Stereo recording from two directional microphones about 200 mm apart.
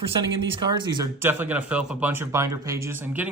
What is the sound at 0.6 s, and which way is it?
Speech, 20° right (ahead or behind).